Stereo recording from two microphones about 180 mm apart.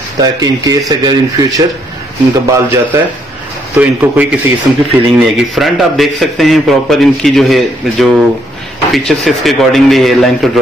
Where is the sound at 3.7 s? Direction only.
10° right (ahead or behind).